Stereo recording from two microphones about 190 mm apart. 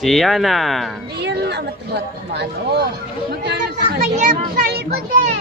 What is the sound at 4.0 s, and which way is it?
Speech, 40° right (ahead or behind).